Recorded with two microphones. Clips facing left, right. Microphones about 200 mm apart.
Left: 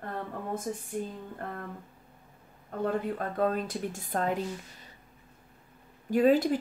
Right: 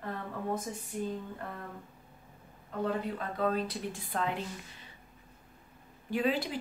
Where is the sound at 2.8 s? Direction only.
50° left (ahead or behind).